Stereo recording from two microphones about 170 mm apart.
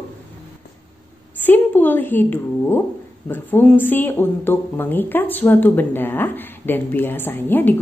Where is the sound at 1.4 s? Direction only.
10° left (ahead or behind).